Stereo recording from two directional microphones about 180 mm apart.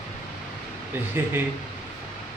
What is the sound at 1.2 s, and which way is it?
Speech, 15° right (ahead or behind).